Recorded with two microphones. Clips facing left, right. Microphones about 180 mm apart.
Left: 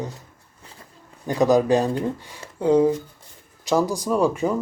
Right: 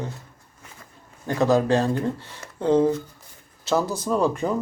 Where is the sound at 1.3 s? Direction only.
15° left (ahead or behind).